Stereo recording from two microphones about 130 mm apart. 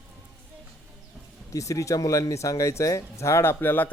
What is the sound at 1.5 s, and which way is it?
Speech, 25° left (ahead or behind).